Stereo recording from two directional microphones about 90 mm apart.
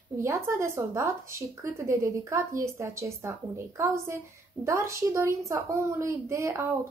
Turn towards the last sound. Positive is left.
turn(degrees=-30)  # may be behind; listen again after turning